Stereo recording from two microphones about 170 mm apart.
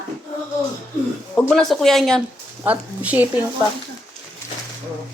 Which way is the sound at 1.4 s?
5° left (ahead or behind).